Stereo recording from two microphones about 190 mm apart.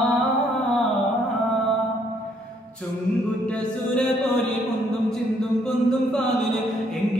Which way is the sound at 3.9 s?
Centre (ahead or behind).